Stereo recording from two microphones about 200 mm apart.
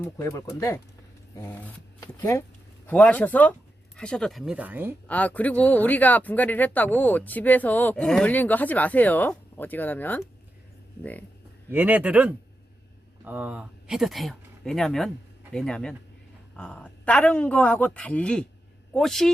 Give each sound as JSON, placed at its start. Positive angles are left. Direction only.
{"t": 0.0, "sound": "speech", "side_deg": 15}
{"t": 5.0, "sound": "speech", "side_deg": 5}
{"t": 11.7, "sound": "speech", "side_deg": -10}